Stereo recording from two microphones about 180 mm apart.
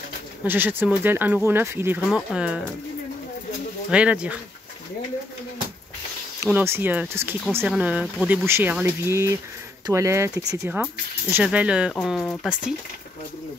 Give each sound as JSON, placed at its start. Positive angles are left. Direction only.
{"t": 0.4, "sound": "speech", "side_deg": -10}
{"t": 2.0, "sound": "speech", "side_deg": 0}
{"t": 3.9, "sound": "speech", "side_deg": -5}
{"t": 6.4, "sound": "speech", "side_deg": -15}
{"t": 8.5, "sound": "speech", "side_deg": -10}
{"t": 11.3, "sound": "speech", "side_deg": -5}